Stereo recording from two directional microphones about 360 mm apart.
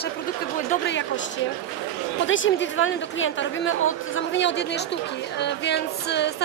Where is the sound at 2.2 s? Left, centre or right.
Left.